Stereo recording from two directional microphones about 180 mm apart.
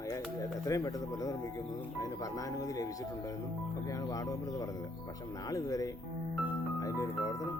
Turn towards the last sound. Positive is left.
turn(degrees=20)  # may be behind; listen again after turning